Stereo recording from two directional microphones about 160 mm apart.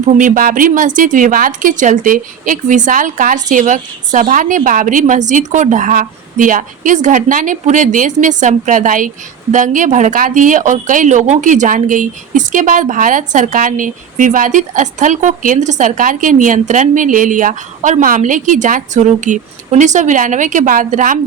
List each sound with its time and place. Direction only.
0.0 s a woman's voice: 50° right (ahead or behind)